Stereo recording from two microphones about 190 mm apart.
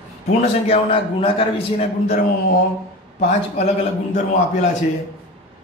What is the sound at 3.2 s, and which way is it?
A man's voice, 35° left (ahead or behind).